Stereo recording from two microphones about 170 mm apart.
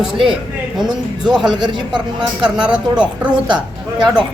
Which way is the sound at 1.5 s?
25° right (ahead or behind).